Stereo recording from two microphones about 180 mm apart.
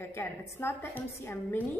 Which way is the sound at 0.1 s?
15° left (ahead or behind).